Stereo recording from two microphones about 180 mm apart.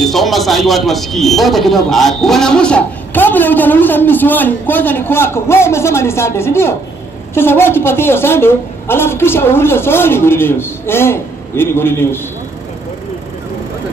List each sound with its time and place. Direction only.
0.0 s speech: centre (ahead or behind)